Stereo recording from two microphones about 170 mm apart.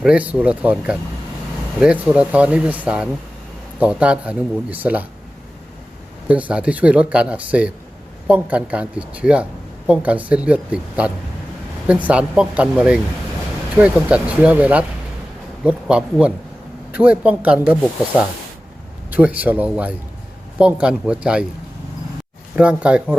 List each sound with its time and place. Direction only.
0.0 s speech: 5° right (ahead or behind)
6.2 s speech: 5° right (ahead or behind)
19.1 s speech: 10° right (ahead or behind)
22.5 s speech: 5° right (ahead or behind)